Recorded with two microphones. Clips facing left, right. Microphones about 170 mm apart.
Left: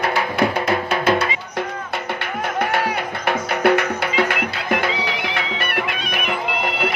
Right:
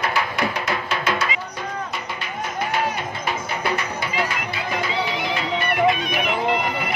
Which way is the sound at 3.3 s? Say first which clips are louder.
Left 9 dB; 65° left (ahead or behind).